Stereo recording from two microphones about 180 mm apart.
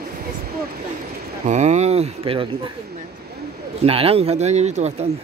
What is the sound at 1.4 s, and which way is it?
Speech, 40° right (ahead or behind).